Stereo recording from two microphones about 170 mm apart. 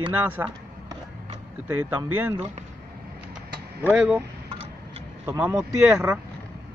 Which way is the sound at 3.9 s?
5° right (ahead or behind).